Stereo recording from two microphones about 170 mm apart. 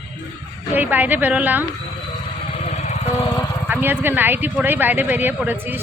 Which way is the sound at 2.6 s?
40° left (ahead or behind).